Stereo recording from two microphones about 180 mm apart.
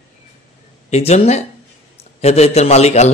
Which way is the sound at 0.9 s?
35° left (ahead or behind).